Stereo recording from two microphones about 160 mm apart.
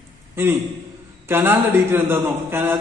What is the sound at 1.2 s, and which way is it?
A man's voice, 15° right (ahead or behind).